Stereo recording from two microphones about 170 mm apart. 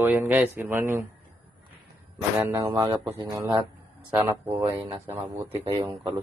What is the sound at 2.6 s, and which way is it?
Speech, 20° right (ahead or behind).